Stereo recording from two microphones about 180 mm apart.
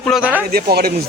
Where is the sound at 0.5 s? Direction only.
55° right (ahead or behind).